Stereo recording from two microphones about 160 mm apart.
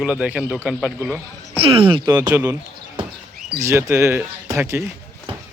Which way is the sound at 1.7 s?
35° right (ahead or behind).